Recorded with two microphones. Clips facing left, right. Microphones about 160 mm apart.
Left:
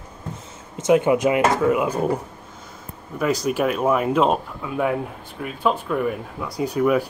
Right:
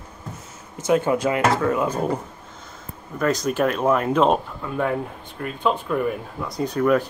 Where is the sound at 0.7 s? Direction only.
20° left (ahead or behind).